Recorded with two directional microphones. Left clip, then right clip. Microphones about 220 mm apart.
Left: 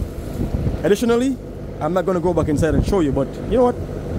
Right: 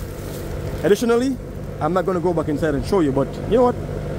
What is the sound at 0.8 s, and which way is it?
A man's voice, 5° left (ahead or behind).